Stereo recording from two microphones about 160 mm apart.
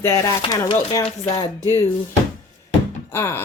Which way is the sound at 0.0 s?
20° left (ahead or behind).